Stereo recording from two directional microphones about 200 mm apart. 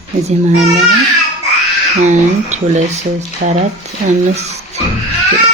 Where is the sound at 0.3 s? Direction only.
35° right (ahead or behind).